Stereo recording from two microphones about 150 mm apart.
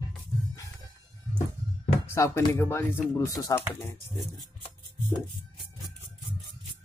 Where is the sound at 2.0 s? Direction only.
20° left (ahead or behind).